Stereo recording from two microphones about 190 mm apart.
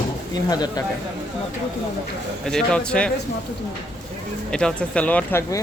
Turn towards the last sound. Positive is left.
turn(degrees=10)  # may be behind; listen again after turning